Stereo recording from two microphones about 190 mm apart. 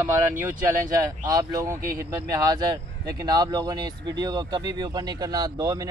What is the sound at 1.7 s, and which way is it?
Speech, 50° right (ahead or behind).